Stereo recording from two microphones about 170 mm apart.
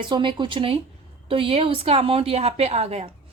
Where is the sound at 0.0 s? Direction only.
30° right (ahead or behind).